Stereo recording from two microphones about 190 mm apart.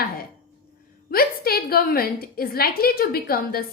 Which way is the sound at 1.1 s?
50° left (ahead or behind).